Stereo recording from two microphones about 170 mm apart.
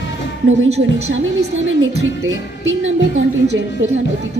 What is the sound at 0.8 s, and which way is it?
Speech, 55° right (ahead or behind).